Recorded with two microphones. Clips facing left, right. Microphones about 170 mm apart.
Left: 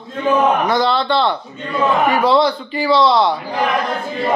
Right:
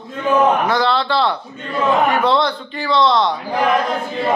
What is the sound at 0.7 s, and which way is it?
A man's voice, centre (ahead or behind).